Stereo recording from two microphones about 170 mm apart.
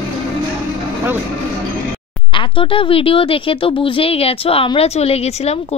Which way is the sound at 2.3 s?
30° left (ahead or behind).